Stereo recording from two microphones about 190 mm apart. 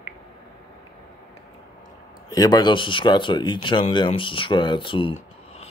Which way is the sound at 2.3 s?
20° left (ahead or behind).